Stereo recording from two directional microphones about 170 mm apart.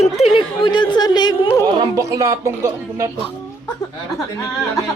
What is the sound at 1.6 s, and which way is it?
Speech, 20° right (ahead or behind).